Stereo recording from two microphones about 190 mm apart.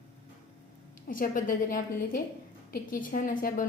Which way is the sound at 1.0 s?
45° left (ahead or behind).